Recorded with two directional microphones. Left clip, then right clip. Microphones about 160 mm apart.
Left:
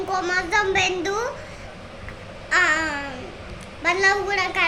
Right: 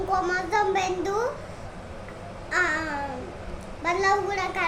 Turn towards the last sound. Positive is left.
turn(degrees=-5)  # may be behind; listen again after turning